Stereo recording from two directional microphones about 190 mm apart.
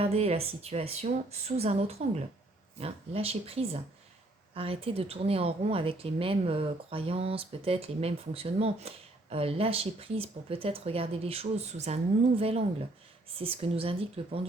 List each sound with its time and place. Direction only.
0.0 s speech: 30° right (ahead or behind)